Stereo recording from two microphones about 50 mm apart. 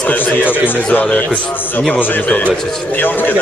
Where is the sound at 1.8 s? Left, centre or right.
Left.